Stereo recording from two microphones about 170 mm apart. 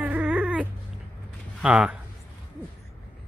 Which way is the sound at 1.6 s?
5° right (ahead or behind).